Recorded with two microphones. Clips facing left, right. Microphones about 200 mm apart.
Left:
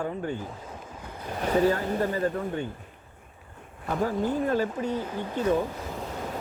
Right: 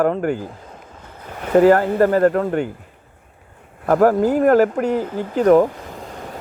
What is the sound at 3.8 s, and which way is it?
Speech, 85° right.